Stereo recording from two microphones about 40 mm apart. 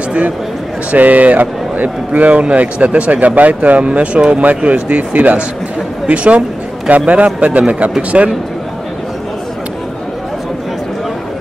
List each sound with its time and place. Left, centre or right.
0.9 s a man's voice: right